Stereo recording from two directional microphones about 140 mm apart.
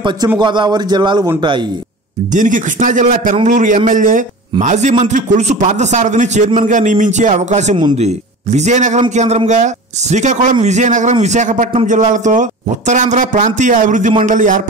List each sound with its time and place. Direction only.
0.4 s a man's voice: 35° right (ahead or behind)
2.3 s a man's voice: 65° right (ahead or behind)
11.7 s a man's voice: 55° right (ahead or behind)